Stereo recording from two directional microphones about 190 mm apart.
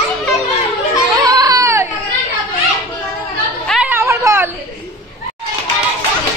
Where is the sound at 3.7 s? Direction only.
10° right (ahead or behind).